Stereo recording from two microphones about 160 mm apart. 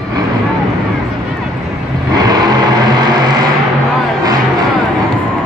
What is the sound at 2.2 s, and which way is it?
Vehicle, 25° right (ahead or behind).